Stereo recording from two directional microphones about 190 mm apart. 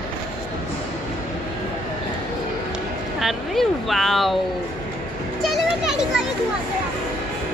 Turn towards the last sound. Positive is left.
turn(degrees=-5)  # may be behind; listen again after turning